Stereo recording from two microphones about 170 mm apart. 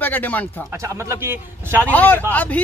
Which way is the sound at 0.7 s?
15° right (ahead or behind).